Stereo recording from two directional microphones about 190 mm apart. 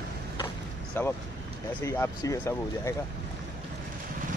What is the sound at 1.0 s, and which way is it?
A man's voice, 10° left (ahead or behind).